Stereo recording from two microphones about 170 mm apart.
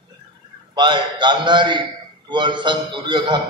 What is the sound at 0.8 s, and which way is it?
A man's voice, 25° right (ahead or behind).